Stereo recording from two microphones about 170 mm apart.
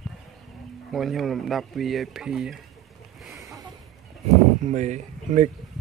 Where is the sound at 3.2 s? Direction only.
Centre (ahead or behind).